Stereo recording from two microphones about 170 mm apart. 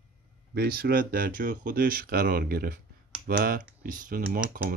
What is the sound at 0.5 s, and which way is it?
Speech, 65° right (ahead or behind).